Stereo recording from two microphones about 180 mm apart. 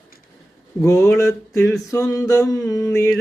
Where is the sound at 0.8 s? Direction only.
15° left (ahead or behind).